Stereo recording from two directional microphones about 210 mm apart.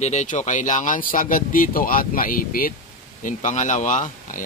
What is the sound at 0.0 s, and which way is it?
Speech, 35° left (ahead or behind).